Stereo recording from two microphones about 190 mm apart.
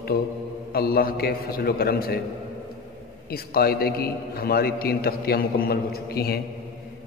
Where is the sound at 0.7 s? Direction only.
50° left (ahead or behind).